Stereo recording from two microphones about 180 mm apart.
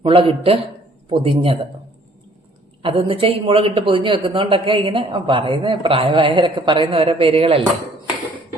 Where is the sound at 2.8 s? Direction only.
30° right (ahead or behind).